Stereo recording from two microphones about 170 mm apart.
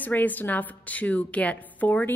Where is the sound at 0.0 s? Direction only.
10° left (ahead or behind).